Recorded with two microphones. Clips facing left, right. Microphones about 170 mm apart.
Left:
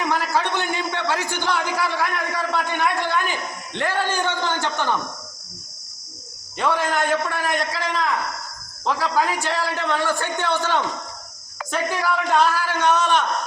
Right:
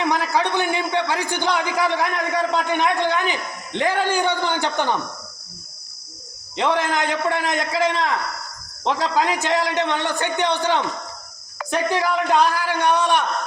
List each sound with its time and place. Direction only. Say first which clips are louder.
0.0 s a man's voice: right 2 dB; 15° right (ahead or behind)
6.6 s a man's voice: right 1 dB; 20° right (ahead or behind)